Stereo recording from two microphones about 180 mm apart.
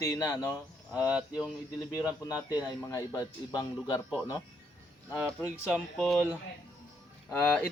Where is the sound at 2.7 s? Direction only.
20° left (ahead or behind).